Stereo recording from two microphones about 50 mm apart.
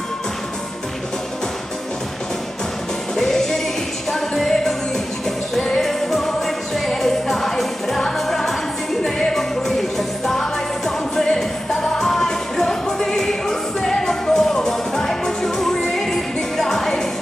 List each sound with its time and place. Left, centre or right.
3.2 s music: centre